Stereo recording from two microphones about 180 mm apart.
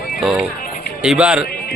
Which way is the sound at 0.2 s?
5° right (ahead or behind).